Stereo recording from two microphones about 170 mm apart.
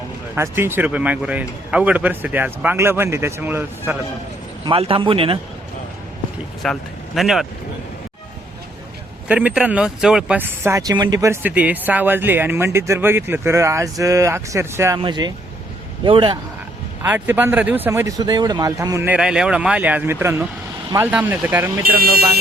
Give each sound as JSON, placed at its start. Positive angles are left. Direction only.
{"t": 0.3, "sound": "speech", "side_deg": -15}
{"t": 4.6, "sound": "speech", "side_deg": -35}
{"t": 6.6, "sound": "speech", "side_deg": 5}
{"t": 9.2, "sound": "a man's voice", "side_deg": -5}
{"t": 17.0, "sound": "speech", "side_deg": -10}
{"t": 19.1, "sound": "speech", "side_deg": -5}
{"t": 21.8, "sound": "speech", "side_deg": -60}